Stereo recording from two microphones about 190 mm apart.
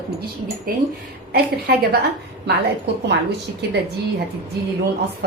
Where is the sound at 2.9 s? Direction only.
60° right (ahead or behind).